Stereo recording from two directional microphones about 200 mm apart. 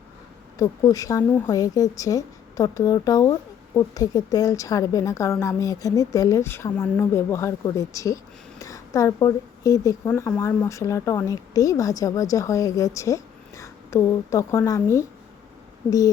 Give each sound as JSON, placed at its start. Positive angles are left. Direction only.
{"t": 0.6, "sound": "a woman's voice", "side_deg": 15}